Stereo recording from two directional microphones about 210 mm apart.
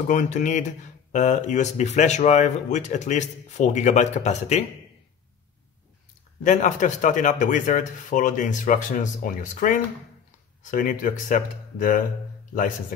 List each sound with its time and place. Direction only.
0.1 s speech: 35° left (ahead or behind)
6.4 s speech: 35° left (ahead or behind)